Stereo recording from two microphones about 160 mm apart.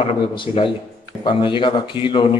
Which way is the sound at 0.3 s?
30° left (ahead or behind).